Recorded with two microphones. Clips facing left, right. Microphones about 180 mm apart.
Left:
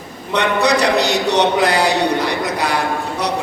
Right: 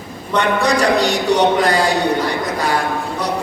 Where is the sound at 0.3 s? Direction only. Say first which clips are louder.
Even; 70° left (ahead or behind).